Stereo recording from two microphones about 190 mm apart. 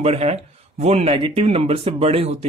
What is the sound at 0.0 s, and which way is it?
Speech, 35° right (ahead or behind).